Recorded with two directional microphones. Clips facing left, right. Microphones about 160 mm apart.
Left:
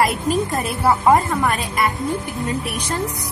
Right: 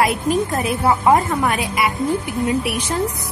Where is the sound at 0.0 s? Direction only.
Centre (ahead or behind).